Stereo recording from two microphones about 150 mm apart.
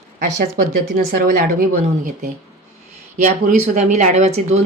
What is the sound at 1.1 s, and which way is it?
A woman's voice, 70° right (ahead or behind).